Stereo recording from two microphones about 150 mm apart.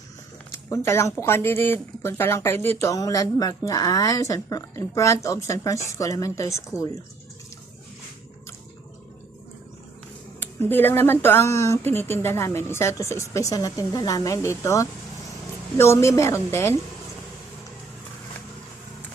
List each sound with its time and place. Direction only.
0.5 s a woman's voice: 20° left (ahead or behind)
10.4 s a woman's voice: 15° left (ahead or behind)